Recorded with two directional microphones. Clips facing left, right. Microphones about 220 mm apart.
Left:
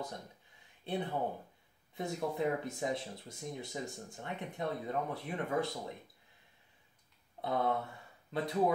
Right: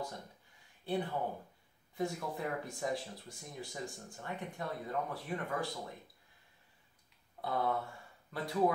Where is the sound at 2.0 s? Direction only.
20° left (ahead or behind).